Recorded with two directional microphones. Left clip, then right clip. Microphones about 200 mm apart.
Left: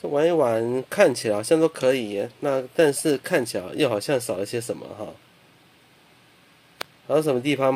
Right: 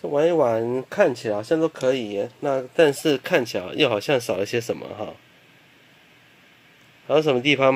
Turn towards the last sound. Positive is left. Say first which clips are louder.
# right 3 dB
turn(degrees=0)  # may be behind; listen again after turning